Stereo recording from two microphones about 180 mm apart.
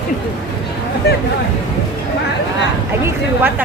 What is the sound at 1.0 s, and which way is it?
Speech, 65° left (ahead or behind).